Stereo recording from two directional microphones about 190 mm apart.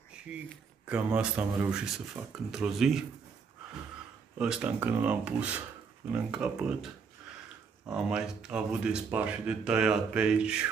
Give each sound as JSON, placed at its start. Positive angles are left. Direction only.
{"t": 0.8, "sound": "speech", "side_deg": -5}
{"t": 4.4, "sound": "speech", "side_deg": -5}